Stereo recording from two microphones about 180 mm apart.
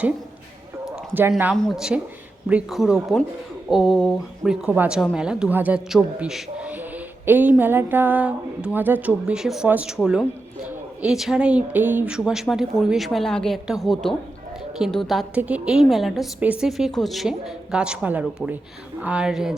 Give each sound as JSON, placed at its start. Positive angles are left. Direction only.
{"t": 0.9, "sound": "a woman's voice", "side_deg": -5}